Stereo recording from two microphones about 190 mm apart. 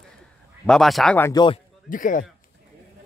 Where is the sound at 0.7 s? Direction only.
Centre (ahead or behind).